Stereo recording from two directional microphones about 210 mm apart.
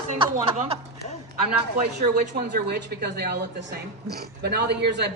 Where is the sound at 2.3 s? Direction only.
50° right (ahead or behind).